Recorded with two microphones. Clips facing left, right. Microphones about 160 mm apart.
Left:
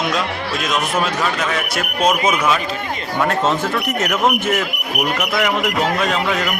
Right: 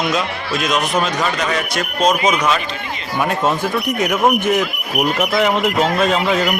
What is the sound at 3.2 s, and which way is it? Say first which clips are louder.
Speech: even; 15° right (ahead or behind).